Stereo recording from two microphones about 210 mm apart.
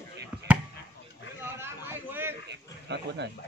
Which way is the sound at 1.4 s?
10° right (ahead or behind).